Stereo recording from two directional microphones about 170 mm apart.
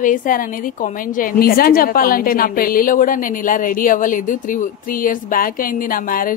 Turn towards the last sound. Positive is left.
turn(degrees=55)  # may be behind; listen again after turning